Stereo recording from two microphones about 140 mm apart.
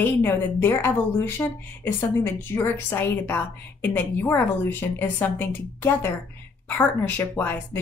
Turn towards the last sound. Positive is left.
turn(degrees=15)  # may be behind; listen again after turning